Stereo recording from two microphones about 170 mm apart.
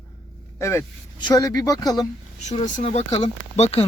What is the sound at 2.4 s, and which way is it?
Speech, 40° left (ahead or behind).